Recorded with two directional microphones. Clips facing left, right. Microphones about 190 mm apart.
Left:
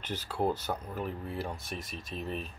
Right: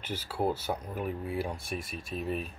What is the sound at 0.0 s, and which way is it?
Speech, 5° right (ahead or behind).